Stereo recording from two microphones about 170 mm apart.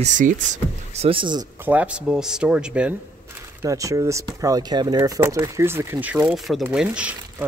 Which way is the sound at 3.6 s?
20° right (ahead or behind).